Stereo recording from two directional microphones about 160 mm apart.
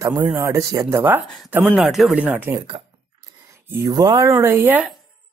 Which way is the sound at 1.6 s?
Centre (ahead or behind).